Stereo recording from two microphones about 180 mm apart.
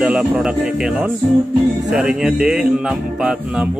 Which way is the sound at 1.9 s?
5° right (ahead or behind).